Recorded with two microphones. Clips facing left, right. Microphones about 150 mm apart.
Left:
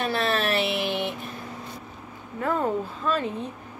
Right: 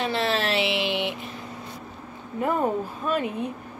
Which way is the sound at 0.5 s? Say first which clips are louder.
Even; 90° right.